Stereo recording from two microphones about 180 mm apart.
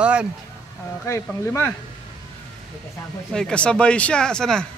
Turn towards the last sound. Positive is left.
turn(degrees=5)  # may be behind; listen again after turning